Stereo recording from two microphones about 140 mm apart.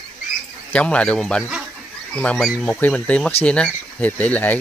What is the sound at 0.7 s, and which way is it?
Speech, 10° left (ahead or behind).